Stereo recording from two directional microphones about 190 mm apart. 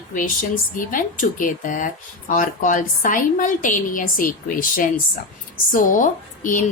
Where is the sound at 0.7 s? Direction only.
45° left (ahead or behind).